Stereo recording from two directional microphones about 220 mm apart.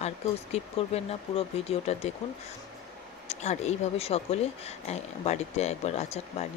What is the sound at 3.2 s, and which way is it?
Speech, 30° left (ahead or behind).